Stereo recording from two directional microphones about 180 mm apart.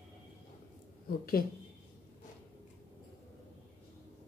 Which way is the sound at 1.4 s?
55° left (ahead or behind).